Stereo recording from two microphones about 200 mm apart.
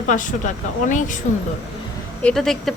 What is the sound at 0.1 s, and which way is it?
Speech, 40° left (ahead or behind).